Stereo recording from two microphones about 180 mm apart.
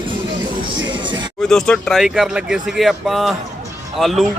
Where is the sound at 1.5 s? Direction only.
5° left (ahead or behind).